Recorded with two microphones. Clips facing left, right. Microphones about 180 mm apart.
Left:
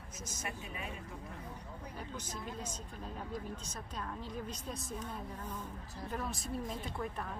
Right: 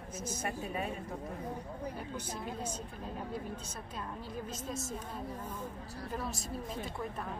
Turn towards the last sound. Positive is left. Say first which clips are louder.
# right 1 dB
turn(degrees=0)  # may be behind; listen again after turning